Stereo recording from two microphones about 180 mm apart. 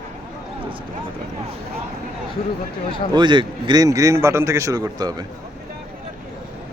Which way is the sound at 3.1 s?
25° right (ahead or behind).